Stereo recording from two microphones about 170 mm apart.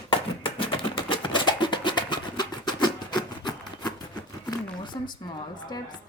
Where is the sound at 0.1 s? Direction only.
30° left (ahead or behind).